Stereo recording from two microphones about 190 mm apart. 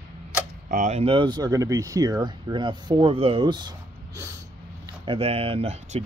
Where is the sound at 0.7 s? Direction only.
40° right (ahead or behind); by 3.7 s 25° right (ahead or behind).